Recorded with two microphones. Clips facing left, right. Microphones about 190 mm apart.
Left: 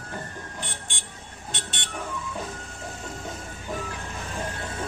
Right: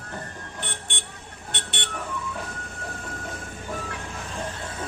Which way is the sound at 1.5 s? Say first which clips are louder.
Right 3 dB; 60° right (ahead or behind).